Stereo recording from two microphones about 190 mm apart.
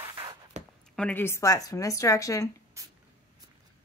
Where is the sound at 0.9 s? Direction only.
10° left (ahead or behind).